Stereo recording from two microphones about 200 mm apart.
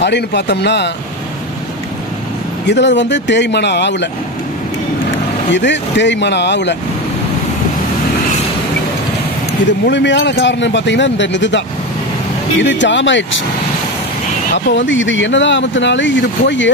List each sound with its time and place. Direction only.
0.0 s speech: 60° left (ahead or behind)
2.6 s speech: 60° left (ahead or behind)
5.5 s speech: 60° left (ahead or behind)
9.7 s speech: 65° left (ahead or behind)
14.5 s speech: 65° left (ahead or behind)